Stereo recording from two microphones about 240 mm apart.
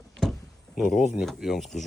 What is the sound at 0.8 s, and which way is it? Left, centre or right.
Speech, centre.